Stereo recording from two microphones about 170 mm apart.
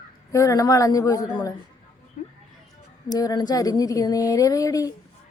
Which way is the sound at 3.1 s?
25° left (ahead or behind).